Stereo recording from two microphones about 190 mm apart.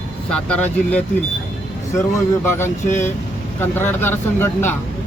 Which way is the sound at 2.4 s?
10° left (ahead or behind).